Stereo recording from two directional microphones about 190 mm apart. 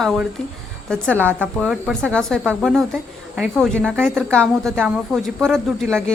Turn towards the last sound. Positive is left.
turn(degrees=5)  # may be behind; listen again after turning